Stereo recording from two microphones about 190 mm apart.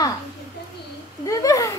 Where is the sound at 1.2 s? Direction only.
15° left (ahead or behind).